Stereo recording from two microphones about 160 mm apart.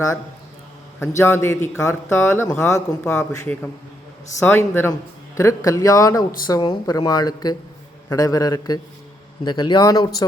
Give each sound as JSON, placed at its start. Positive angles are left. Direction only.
{"t": 0.9, "sound": "a man's voice", "side_deg": 15}